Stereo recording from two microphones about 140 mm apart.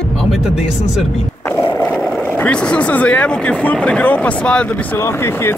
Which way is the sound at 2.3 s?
10° left (ahead or behind).